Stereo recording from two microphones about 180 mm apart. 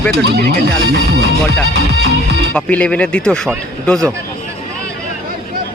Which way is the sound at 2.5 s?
5° left (ahead or behind).